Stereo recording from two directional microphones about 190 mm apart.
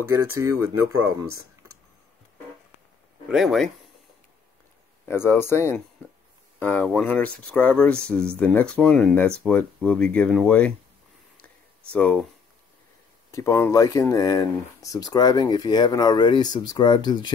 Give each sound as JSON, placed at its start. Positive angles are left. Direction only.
{"t": 0.0, "sound": "speech", "side_deg": -15}
{"t": 3.3, "sound": "speech", "side_deg": 0}
{"t": 5.0, "sound": "speech", "side_deg": 15}
{"t": 11.9, "sound": "speech", "side_deg": 5}
{"t": 13.3, "sound": "speech", "side_deg": 15}